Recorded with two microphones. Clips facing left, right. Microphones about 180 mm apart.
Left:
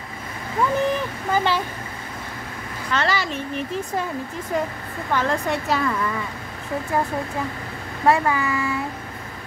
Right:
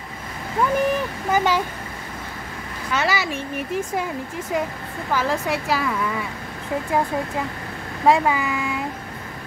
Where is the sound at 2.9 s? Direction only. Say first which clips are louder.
Even; 10° right (ahead or behind).